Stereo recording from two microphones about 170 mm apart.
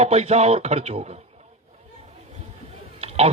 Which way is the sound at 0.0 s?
40° right (ahead or behind).